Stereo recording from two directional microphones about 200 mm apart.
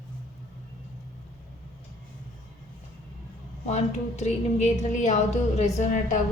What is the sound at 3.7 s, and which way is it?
A woman's voice, 35° left (ahead or behind).